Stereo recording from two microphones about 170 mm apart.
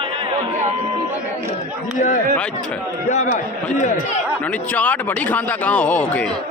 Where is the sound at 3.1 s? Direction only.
45° left (ahead or behind).